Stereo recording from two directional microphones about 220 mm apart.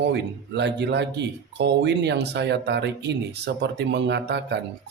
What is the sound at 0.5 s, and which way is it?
Speech, 50° right (ahead or behind).